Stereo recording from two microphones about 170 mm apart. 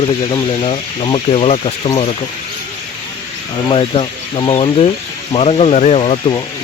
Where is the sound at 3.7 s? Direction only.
30° left (ahead or behind).